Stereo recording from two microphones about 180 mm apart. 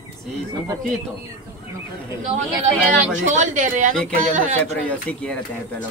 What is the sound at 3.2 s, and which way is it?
Speech, 45° right (ahead or behind).